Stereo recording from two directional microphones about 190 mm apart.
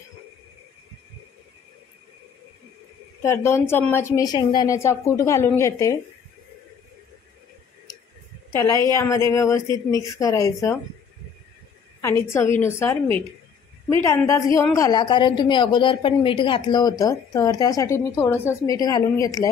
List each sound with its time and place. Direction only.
3.2 s a woman's voice: 15° left (ahead or behind)
8.9 s a woman's voice: 15° left (ahead or behind)
12.0 s a woman's voice: 15° left (ahead or behind)